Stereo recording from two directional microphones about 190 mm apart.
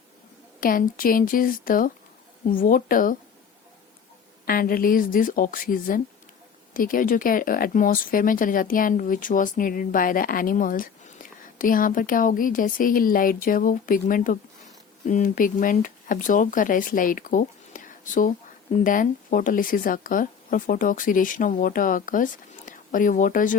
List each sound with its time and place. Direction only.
0.6 s speech: 45° left (ahead or behind)
4.4 s speech: 50° left (ahead or behind)